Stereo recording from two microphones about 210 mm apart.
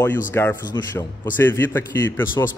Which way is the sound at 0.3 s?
10° left (ahead or behind).